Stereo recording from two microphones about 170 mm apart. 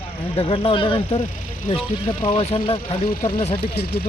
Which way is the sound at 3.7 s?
70° left (ahead or behind).